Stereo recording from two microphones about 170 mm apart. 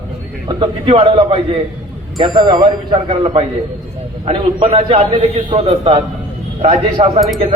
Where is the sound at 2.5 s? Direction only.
35° right (ahead or behind).